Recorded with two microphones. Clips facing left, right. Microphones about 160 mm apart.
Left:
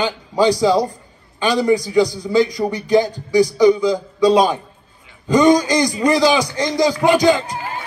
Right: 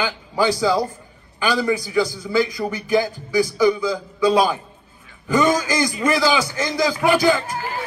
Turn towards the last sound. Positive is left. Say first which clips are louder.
# left 3 dB
turn(degrees=20)  # may be behind; listen again after turning